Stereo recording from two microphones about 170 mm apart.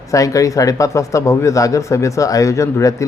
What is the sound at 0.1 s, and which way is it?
Speech, 20° left (ahead or behind).